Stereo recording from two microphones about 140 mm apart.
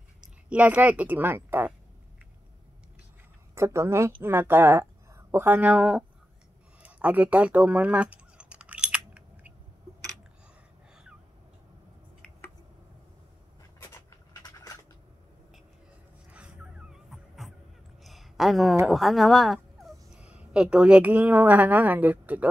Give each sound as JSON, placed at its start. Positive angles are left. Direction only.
{"t": 0.5, "sound": "speech", "side_deg": -10}
{"t": 3.5, "sound": "speech", "side_deg": -20}
{"t": 6.8, "sound": "typing", "side_deg": -10}
{"t": 13.6, "sound": "a sound", "side_deg": 25}
{"t": 16.3, "sound": "a sound", "side_deg": -10}
{"t": 18.9, "sound": "speech", "side_deg": 0}